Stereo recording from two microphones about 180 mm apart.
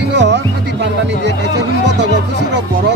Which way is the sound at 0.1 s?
75° right (ahead or behind).